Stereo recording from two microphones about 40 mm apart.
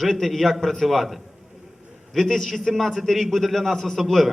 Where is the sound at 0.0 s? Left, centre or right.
Centre.